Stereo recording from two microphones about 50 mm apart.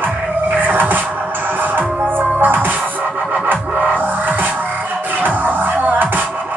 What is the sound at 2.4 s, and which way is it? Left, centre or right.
Music, right.